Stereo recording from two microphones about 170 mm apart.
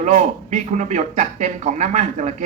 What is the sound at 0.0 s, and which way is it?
A man's voice, 45° right (ahead or behind).